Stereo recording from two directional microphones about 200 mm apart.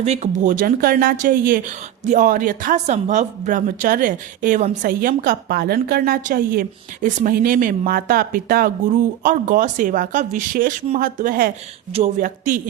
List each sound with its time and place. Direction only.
0.0 s speech: 35° right (ahead or behind)